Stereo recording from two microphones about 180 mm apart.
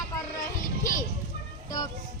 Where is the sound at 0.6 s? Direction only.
45° left (ahead or behind).